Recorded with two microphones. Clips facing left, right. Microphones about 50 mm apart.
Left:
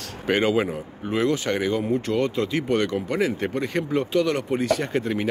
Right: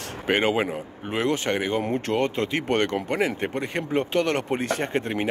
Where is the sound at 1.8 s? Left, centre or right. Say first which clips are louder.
Left 1 dB; right.